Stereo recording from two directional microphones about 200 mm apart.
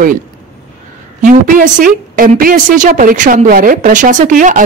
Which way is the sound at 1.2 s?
40° right (ahead or behind).